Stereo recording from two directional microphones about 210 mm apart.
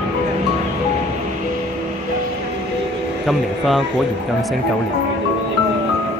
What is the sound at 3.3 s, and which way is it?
Speech, centre (ahead or behind).